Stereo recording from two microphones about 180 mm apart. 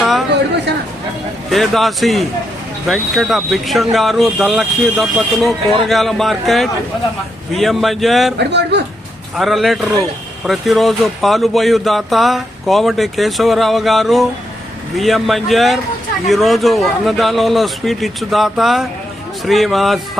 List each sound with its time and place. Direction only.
0.0 s a sound: centre (ahead or behind)
1.5 s speech: centre (ahead or behind)
8.4 s speech: 70° right (ahead or behind)
9.3 s speech: centre (ahead or behind)